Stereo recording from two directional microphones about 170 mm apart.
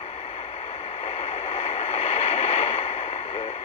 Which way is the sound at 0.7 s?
35° left (ahead or behind).